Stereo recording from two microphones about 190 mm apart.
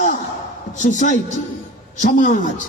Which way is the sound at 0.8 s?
40° left (ahead or behind).